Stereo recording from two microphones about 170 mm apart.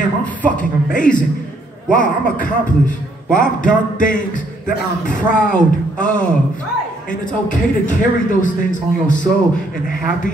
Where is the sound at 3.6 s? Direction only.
50° left (ahead or behind).